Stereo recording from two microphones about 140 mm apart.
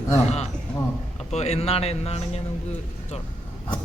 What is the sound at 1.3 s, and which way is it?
Speech, 50° left (ahead or behind).